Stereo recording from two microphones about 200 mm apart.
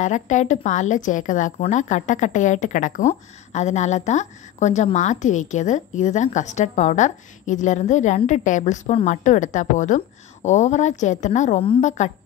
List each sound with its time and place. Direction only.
0.0 s speech: 35° left (ahead or behind)